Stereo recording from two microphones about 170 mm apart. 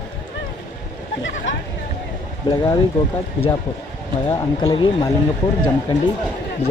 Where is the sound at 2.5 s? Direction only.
35° left (ahead or behind).